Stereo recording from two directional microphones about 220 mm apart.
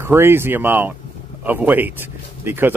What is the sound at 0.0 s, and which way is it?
Speech, 10° right (ahead or behind).